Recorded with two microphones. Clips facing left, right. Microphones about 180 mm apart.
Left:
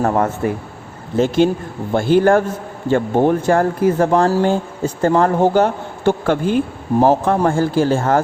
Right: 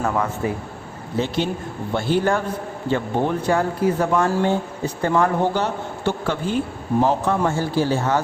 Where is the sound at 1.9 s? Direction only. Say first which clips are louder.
Left 7 dB; 50° left (ahead or behind).